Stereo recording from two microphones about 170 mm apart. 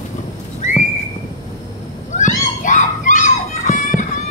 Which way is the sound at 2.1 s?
45° left (ahead or behind).